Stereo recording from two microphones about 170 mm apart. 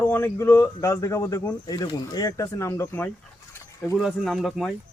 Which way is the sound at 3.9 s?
Centre (ahead or behind).